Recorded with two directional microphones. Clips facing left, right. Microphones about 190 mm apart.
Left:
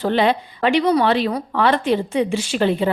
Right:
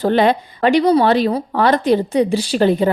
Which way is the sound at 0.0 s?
45° right (ahead or behind).